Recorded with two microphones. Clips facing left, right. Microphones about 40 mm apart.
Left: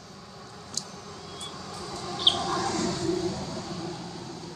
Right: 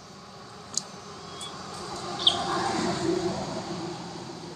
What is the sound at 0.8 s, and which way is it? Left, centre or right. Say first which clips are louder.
Vehicle: even; centre.